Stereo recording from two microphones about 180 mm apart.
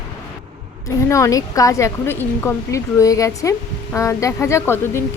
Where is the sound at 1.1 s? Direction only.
15° left (ahead or behind).